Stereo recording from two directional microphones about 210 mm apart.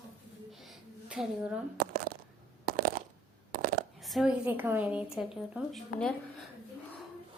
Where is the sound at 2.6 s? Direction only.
45° right (ahead or behind).